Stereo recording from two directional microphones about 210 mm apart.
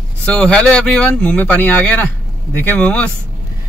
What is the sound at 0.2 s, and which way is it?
Speech, 5° left (ahead or behind).